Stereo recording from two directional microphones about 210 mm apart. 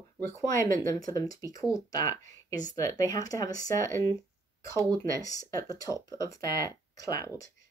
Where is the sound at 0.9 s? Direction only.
15° left (ahead or behind).